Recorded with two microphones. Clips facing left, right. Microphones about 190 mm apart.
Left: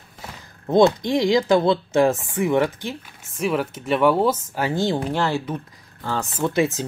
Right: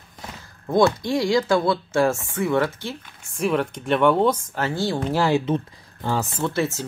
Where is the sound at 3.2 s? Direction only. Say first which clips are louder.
Right 1 dB; centre (ahead or behind); by 5.0 s 20° left (ahead or behind).